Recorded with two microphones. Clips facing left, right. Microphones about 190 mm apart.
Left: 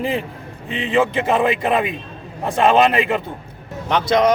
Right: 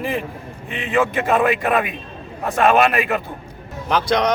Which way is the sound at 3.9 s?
Centre (ahead or behind).